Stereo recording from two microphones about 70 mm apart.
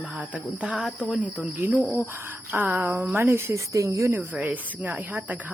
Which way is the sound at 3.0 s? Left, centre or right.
Right.